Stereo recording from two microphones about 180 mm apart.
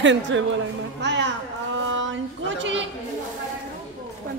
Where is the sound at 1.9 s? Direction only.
90° right.